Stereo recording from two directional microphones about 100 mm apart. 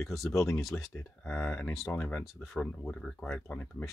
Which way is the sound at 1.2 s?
15° left (ahead or behind).